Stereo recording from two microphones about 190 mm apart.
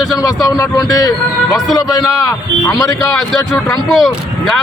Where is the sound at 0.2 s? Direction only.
15° left (ahead or behind).